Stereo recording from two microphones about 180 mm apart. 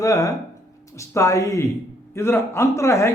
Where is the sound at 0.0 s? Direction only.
20° left (ahead or behind).